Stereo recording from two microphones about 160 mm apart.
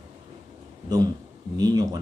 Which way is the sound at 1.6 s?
25° right (ahead or behind).